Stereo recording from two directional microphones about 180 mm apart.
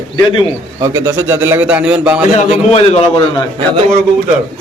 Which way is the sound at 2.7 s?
35° left (ahead or behind).